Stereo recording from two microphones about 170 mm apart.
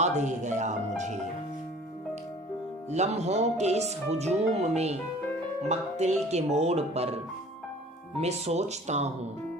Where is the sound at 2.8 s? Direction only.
40° right (ahead or behind).